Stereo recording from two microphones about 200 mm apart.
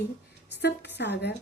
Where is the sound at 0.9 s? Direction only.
55° left (ahead or behind).